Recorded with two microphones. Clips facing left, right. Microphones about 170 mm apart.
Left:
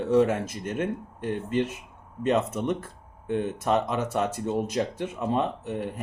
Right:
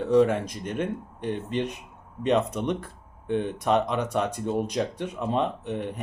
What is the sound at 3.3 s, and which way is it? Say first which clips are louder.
Speech: right 1 dB; 5° left (ahead or behind).